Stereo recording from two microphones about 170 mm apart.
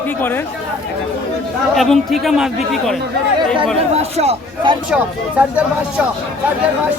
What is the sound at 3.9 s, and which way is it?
Speech, 35° right (ahead or behind).